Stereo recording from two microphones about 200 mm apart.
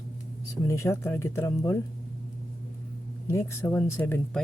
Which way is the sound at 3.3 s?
15° left (ahead or behind).